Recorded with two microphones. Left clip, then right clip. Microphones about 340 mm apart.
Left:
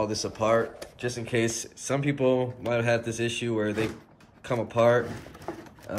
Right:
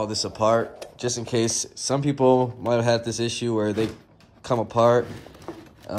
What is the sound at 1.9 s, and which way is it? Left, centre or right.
Speech, centre.